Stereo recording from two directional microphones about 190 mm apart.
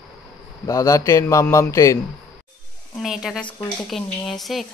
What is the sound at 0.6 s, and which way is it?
A man's voice, 15° left (ahead or behind).